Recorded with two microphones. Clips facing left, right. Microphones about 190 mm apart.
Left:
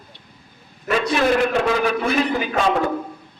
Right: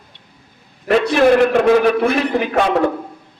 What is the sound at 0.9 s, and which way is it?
A man's voice, 65° right (ahead or behind).